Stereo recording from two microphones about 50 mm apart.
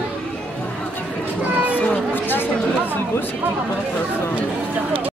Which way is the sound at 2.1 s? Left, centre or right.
Left.